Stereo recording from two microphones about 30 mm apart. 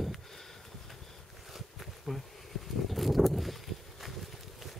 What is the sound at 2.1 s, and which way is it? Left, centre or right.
Speech, centre.